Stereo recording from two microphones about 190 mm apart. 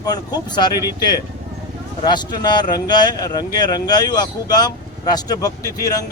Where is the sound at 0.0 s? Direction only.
20° left (ahead or behind).